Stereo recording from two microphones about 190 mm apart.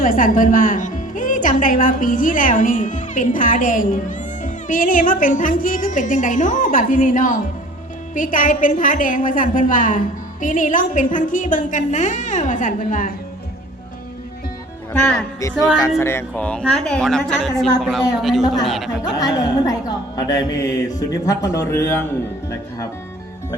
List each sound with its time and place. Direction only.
0.0 s speech: 45° left (ahead or behind)
15.4 s a woman's voice: 15° left (ahead or behind); by 18.9 s centre (ahead or behind)
19.1 s a woman's voice: 20° left (ahead or behind)